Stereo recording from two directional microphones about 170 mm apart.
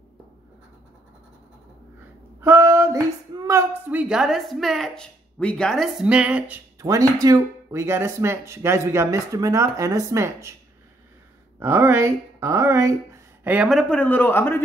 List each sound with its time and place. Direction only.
2.4 s speech: 15° right (ahead or behind)
11.6 s a man's voice: 15° right (ahead or behind); by 14.6 s 10° left (ahead or behind)